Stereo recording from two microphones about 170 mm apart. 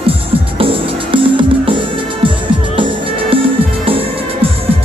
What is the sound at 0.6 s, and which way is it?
Music, 30° right (ahead or behind).